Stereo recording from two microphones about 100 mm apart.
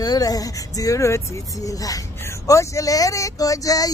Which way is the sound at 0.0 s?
40° left (ahead or behind).